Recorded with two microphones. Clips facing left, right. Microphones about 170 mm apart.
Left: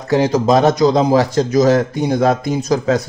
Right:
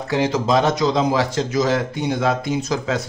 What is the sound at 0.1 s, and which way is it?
Speech, 40° left (ahead or behind).